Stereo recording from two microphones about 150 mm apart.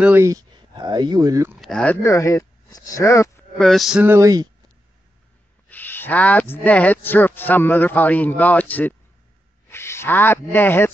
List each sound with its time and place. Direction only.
0.0 s speech: 15° right (ahead or behind)
1.5 s a sound: centre (ahead or behind)
2.0 s speech: 20° left (ahead or behind)
3.5 s a sound: centre (ahead or behind)
4.0 s speech: 15° right (ahead or behind)
5.7 s a man's voice: 10° left (ahead or behind)